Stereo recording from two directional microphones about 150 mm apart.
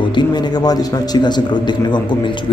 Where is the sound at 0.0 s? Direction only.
30° left (ahead or behind).